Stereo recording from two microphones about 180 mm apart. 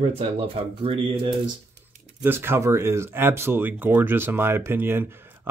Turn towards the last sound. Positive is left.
turn(degrees=-10)  # may be behind; listen again after turning